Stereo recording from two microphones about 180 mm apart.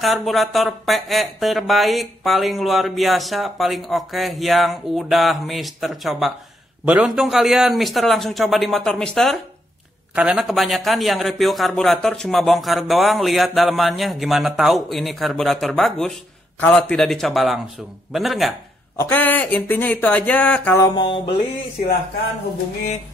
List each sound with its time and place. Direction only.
0.0 s a man's voice: centre (ahead or behind)
18.9 s speech: 10° left (ahead or behind)
20.8 s a sound: 25° left (ahead or behind)